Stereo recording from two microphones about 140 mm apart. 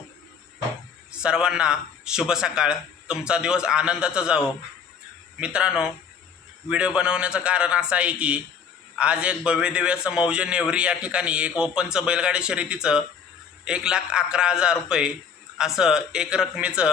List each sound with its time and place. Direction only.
1.1 s a man's voice: 5° right (ahead or behind)